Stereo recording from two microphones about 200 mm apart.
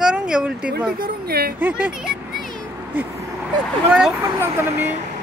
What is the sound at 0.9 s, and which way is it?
Speech, 50° right (ahead or behind).